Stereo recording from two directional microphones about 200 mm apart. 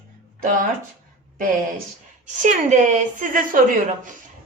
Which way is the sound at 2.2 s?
40° right (ahead or behind).